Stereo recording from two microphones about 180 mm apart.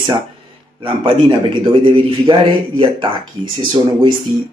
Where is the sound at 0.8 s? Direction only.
25° right (ahead or behind).